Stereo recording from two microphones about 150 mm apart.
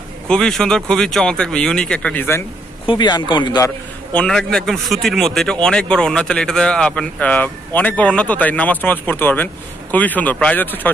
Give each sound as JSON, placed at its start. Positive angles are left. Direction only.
{"t": 0.3, "sound": "speech", "side_deg": 5}
{"t": 2.9, "sound": "speech", "side_deg": 30}
{"t": 4.1, "sound": "speech", "side_deg": 5}